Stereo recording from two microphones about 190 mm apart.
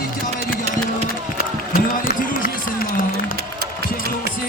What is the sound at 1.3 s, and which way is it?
Run, 50° left (ahead or behind).